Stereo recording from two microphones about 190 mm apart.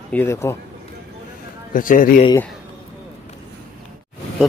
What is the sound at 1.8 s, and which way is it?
Speech, 45° left (ahead or behind).